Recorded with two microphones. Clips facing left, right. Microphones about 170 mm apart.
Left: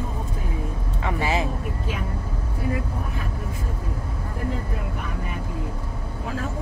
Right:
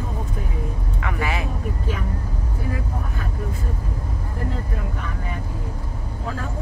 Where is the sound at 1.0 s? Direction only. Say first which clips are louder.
Left 2 dB; 30° left (ahead or behind).